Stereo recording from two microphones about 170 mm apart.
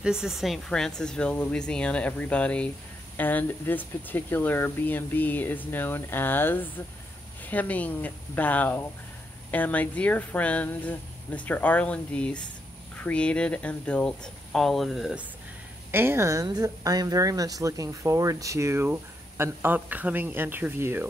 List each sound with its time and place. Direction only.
0.0 s speech: 5° right (ahead or behind)
15.9 s a woman's voice: 15° right (ahead or behind)